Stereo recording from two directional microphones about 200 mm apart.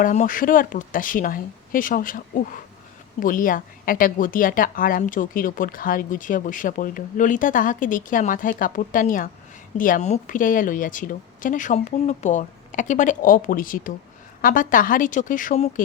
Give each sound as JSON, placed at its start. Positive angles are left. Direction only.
{"t": 0.0, "sound": "a woman's voice", "side_deg": 40}